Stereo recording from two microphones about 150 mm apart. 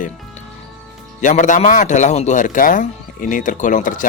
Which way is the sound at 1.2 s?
55° left (ahead or behind).